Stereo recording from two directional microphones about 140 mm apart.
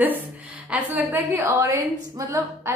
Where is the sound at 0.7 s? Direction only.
15° right (ahead or behind).